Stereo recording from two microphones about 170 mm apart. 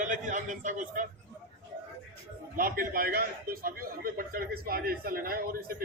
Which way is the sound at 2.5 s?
55° right (ahead or behind).